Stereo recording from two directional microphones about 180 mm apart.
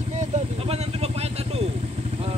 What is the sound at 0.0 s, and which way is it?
Vehicle, 40° right (ahead or behind).